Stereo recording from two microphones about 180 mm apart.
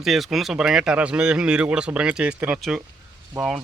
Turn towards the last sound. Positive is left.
turn(degrees=-5)  # may be behind; listen again after turning